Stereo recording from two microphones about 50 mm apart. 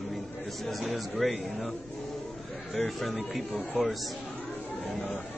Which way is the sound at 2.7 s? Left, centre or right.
Centre.